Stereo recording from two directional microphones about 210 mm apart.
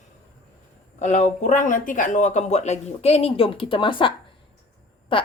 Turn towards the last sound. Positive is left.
turn(degrees=25)  # may be behind; listen again after turning